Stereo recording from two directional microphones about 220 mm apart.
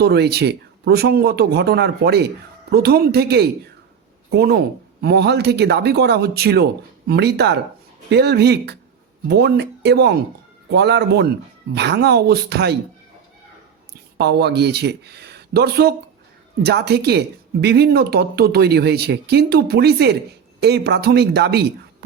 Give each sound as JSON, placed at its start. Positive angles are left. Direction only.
{"t": 0.0, "sound": "a man's voice", "side_deg": -50}
{"t": 14.2, "sound": "a man's voice", "side_deg": -50}